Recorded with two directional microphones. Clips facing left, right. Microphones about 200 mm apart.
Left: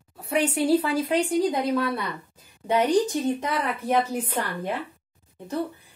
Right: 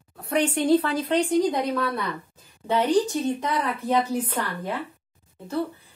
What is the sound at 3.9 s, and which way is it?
Speech, 25° left (ahead or behind).